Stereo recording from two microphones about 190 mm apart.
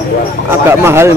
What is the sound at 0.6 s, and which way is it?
Speech, 15° right (ahead or behind).